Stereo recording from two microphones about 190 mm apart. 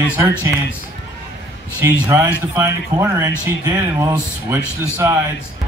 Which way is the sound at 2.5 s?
15° right (ahead or behind).